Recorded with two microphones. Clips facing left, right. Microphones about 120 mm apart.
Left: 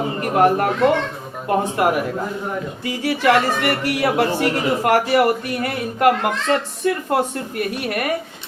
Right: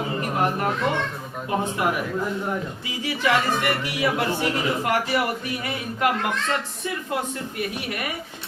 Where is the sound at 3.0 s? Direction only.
65° left (ahead or behind).